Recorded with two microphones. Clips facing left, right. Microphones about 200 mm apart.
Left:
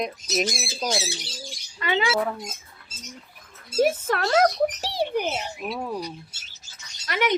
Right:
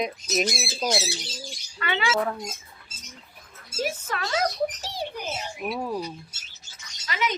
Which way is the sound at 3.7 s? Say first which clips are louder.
Left 8 dB; 55° left (ahead or behind).